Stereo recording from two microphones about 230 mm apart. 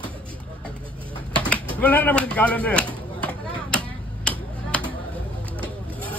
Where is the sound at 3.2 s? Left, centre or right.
Centre.